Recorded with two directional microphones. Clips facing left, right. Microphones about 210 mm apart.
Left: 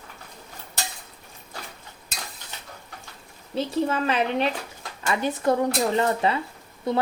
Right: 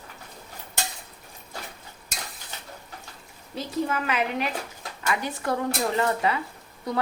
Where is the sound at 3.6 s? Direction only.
30° left (ahead or behind).